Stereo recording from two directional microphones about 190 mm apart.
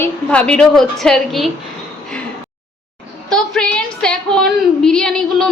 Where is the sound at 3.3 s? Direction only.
5° left (ahead or behind).